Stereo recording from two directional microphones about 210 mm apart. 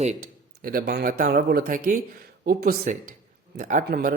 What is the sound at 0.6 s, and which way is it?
Speech, 45° right (ahead or behind).